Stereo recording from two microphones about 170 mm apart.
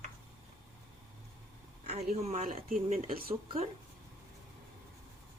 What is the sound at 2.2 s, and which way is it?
Speech, 40° right (ahead or behind).